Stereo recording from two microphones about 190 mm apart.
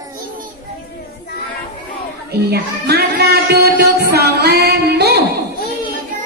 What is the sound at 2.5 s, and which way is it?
Speech, 60° right (ahead or behind).